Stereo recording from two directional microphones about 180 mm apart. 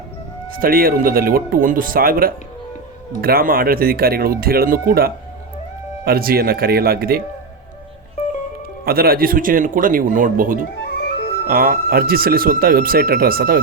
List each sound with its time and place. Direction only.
0.6 s speech: 55° right (ahead or behind)
8.8 s speech: 55° right (ahead or behind)